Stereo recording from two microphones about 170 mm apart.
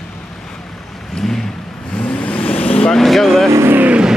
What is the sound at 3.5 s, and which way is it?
Vehicle, 15° right (ahead or behind).